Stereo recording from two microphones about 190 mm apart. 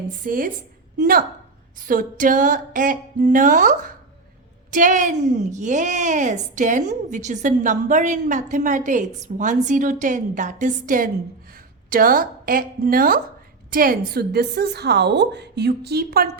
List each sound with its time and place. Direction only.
0.3 s music: 45° right (ahead or behind)
4.7 s a woman's voice: 40° right (ahead or behind)
11.9 s music: 50° right (ahead or behind)
13.7 s a woman's voice: 50° right (ahead or behind)